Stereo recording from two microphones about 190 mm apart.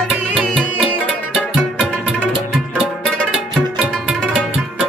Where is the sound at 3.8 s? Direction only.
5° right (ahead or behind).